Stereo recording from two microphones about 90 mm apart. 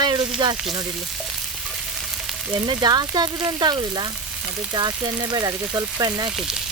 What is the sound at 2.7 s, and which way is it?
Speech, 50° right (ahead or behind).